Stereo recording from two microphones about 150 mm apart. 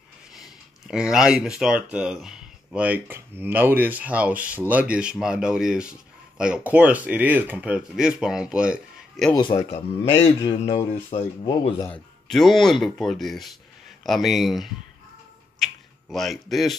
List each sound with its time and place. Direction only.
0.3 s speech: 5° right (ahead or behind)
9.3 s speech: 30° left (ahead or behind)
11.1 s speech: 40° left (ahead or behind)
12.3 s speech: centre (ahead or behind)